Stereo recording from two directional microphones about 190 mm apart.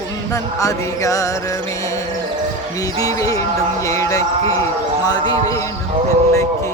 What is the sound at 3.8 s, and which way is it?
Speech, 15° left (ahead or behind).